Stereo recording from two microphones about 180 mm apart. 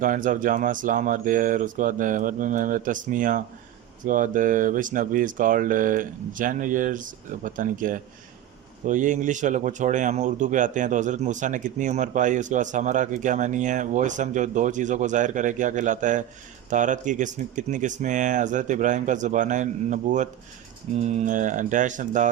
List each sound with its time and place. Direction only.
0.0 s speech: 45° right (ahead or behind)